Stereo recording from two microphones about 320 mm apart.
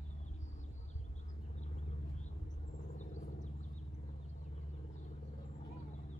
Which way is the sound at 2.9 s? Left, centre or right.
Left.